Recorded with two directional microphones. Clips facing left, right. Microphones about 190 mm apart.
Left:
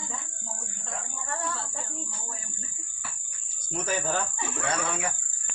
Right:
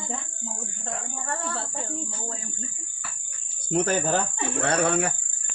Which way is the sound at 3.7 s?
65° right (ahead or behind).